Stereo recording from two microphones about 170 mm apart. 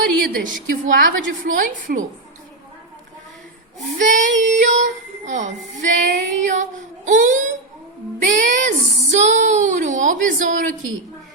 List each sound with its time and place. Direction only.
0.2 s a woman's voice: 60° right (ahead or behind)
3.9 s a woman's voice: 45° right (ahead or behind)